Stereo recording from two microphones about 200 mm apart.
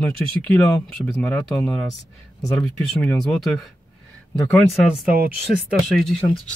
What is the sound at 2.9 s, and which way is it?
Speech, 5° left (ahead or behind).